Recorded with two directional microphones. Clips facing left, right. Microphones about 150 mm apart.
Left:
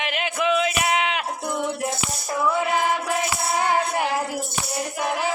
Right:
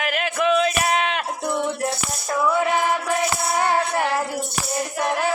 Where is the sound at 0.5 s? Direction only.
10° left (ahead or behind).